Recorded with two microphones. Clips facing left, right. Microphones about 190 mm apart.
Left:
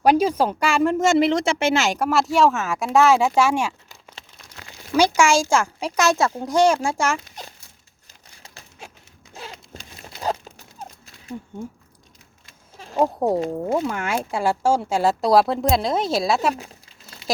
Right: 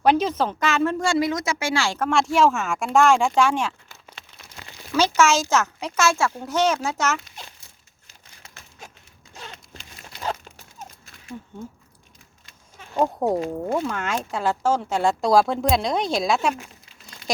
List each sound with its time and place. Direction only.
0.0 s a child's voice: 10° left (ahead or behind)
0.9 s speech: 20° left (ahead or behind)
2.0 s a child's voice: 5° left (ahead or behind)
13.0 s a child's voice: 5° left (ahead or behind)
16.6 s crumpling: 35° left (ahead or behind)